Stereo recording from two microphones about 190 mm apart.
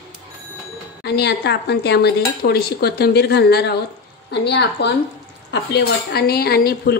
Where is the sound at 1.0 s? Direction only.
60° left (ahead or behind).